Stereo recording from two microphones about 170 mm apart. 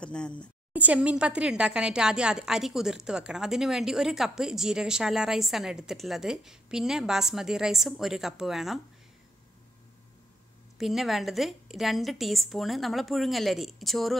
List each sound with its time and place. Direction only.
0.0 s a woman's voice: 5° left (ahead or behind)
0.7 s a woman's voice: 10° right (ahead or behind)
10.8 s a woman's voice: centre (ahead or behind)